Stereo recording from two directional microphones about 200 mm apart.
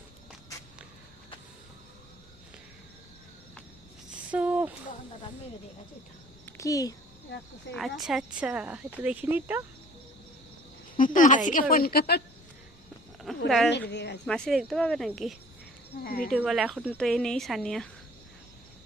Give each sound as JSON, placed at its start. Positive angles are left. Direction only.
{"t": 4.1, "sound": "a sound", "side_deg": -5}
{"t": 6.4, "sound": "a sound", "side_deg": 15}
{"t": 7.7, "sound": "speech", "side_deg": 0}
{"t": 10.9, "sound": "a woman's voice", "side_deg": 40}
{"t": 13.3, "sound": "a sound", "side_deg": 0}
{"t": 13.7, "sound": "a woman's voice", "side_deg": 60}
{"t": 14.3, "sound": "speech", "side_deg": 0}
{"t": 16.0, "sound": "a woman's voice", "side_deg": 45}
{"t": 16.4, "sound": "speech", "side_deg": 0}